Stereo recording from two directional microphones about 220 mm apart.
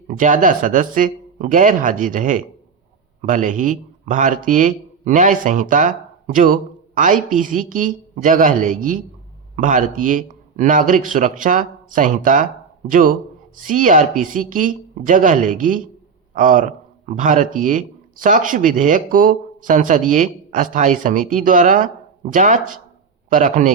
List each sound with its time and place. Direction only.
0.2 s a man's voice: 35° right (ahead or behind)